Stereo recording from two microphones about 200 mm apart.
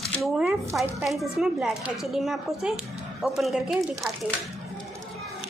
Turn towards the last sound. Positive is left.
turn(degrees=0)  # may be behind; listen again after turning